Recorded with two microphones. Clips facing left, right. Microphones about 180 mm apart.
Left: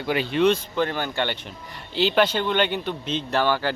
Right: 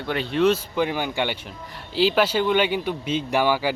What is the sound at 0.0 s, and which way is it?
Speech, 5° left (ahead or behind).